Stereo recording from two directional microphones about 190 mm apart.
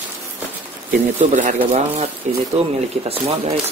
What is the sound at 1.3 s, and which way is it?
Speech, 40° right (ahead or behind).